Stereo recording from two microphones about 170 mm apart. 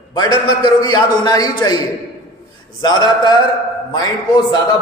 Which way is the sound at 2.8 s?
25° left (ahead or behind).